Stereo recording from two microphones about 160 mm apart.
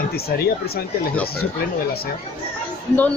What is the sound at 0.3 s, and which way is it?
Speech, 75° left (ahead or behind).